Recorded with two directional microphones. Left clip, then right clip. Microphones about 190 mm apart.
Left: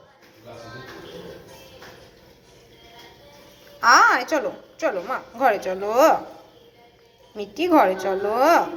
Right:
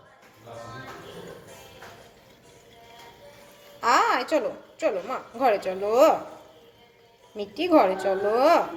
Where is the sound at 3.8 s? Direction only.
15° right (ahead or behind).